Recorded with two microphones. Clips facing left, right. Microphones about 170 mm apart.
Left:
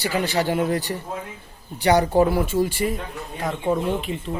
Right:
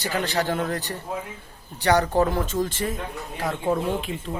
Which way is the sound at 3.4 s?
5° right (ahead or behind).